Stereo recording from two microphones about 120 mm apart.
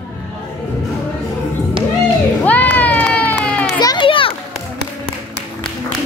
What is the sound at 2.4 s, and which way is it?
Run, 15° left (ahead or behind).